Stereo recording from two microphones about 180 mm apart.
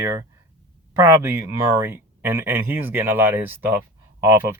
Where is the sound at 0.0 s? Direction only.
20° right (ahead or behind).